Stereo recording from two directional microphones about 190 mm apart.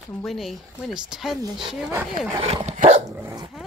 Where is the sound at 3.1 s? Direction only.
15° right (ahead or behind).